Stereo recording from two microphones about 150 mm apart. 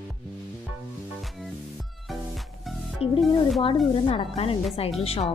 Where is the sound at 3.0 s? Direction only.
40° left (ahead or behind).